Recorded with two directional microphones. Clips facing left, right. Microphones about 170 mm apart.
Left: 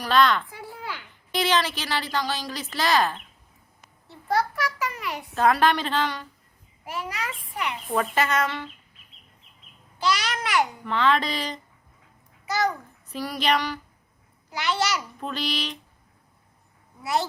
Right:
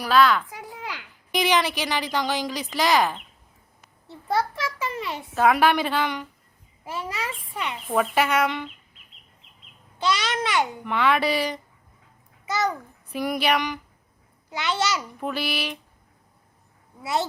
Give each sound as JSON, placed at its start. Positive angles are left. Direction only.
{"t": 0.0, "sound": "a child's voice", "side_deg": -5}
{"t": 0.5, "sound": "a sound", "side_deg": -20}
{"t": 1.3, "sound": "a woman's voice", "side_deg": -15}
{"t": 4.3, "sound": "a sound", "side_deg": -25}
{"t": 5.3, "sound": "a woman's voice", "side_deg": -10}
{"t": 6.8, "sound": "a child's voice", "side_deg": -25}
{"t": 7.9, "sound": "a woman's voice", "side_deg": -10}
{"t": 10.0, "sound": "a child's voice", "side_deg": -25}
{"t": 10.8, "sound": "a woman's voice", "side_deg": -10}
{"t": 12.5, "sound": "a child's voice", "side_deg": -20}
{"t": 14.5, "sound": "a child's voice", "side_deg": -25}
{"t": 15.2, "sound": "a woman's voice", "side_deg": -10}
{"t": 17.0, "sound": "speech", "side_deg": -25}